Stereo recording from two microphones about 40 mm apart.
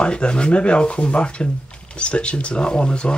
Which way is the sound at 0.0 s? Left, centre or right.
Left.